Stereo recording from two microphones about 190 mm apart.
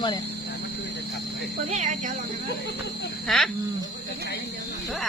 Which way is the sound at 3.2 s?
Centre (ahead or behind).